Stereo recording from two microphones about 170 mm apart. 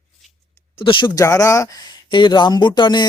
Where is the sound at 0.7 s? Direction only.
30° left (ahead or behind).